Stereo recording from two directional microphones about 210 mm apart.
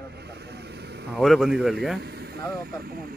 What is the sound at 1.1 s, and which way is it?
Speech, centre (ahead or behind).